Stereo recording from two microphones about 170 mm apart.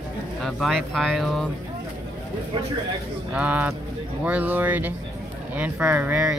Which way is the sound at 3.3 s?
10° right (ahead or behind).